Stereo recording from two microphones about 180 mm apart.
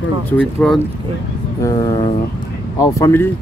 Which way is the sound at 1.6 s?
20° left (ahead or behind).